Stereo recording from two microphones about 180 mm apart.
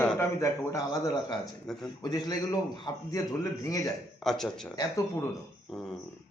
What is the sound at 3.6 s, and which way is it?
Speech, 20° left (ahead or behind).